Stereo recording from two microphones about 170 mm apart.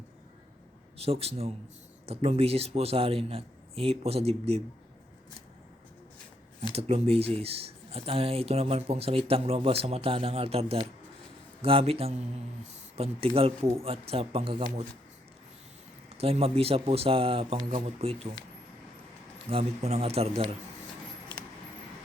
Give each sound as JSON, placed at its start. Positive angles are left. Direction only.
{"t": 0.9, "sound": "speech", "side_deg": -35}
{"t": 6.7, "sound": "speech", "side_deg": -35}
{"t": 16.0, "sound": "speech", "side_deg": -35}
{"t": 19.5, "sound": "speech", "side_deg": -35}